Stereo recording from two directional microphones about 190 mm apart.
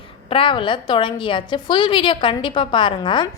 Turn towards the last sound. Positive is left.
turn(degrees=25)  # may be behind; listen again after turning